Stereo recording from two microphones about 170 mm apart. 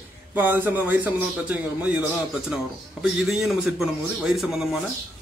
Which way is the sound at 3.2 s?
Centre (ahead or behind).